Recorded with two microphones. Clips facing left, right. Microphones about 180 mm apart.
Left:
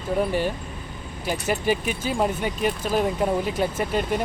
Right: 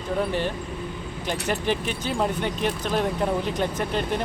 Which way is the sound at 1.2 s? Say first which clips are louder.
Left 2 dB; 5° left (ahead or behind).